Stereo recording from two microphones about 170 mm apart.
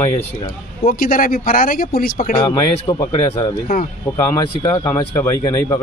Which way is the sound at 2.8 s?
20° left (ahead or behind).